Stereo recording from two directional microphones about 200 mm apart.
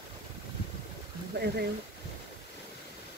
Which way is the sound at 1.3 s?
55° right (ahead or behind).